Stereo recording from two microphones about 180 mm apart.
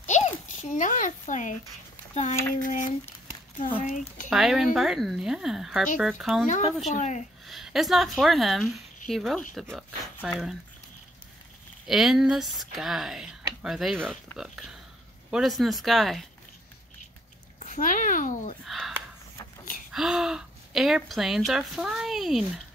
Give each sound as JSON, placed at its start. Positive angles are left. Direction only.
{"t": 0.0, "sound": "a sound", "side_deg": 40}
{"t": 2.6, "sound": "speech", "side_deg": 45}
{"t": 4.3, "sound": "a woman's voice", "side_deg": 0}
{"t": 6.4, "sound": "speech", "side_deg": 45}
{"t": 7.4, "sound": "a woman's voice", "side_deg": 0}
{"t": 11.9, "sound": "a woman's voice", "side_deg": 0}
{"t": 17.6, "sound": "a child's voice", "side_deg": 45}
{"t": 18.7, "sound": "a sound", "side_deg": 0}
{"t": 19.9, "sound": "a woman's voice", "side_deg": 0}